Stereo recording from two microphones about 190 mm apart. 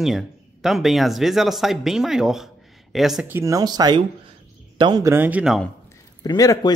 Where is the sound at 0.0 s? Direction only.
Centre (ahead or behind).